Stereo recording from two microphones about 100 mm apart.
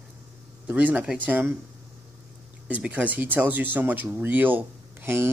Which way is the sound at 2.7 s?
15° right (ahead or behind).